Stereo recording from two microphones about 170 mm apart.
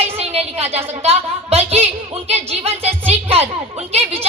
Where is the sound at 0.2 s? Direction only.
40° right (ahead or behind).